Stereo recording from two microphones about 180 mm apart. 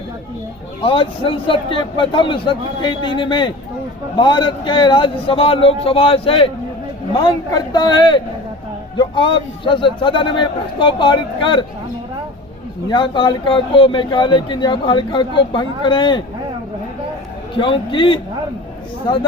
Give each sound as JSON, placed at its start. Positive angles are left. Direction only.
{"t": 0.8, "sound": "speech", "side_deg": 30}
{"t": 12.9, "sound": "speech", "side_deg": 25}
{"t": 17.5, "sound": "speech", "side_deg": 30}